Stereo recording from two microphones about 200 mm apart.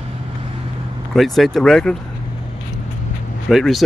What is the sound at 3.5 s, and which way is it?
Speech, centre (ahead or behind).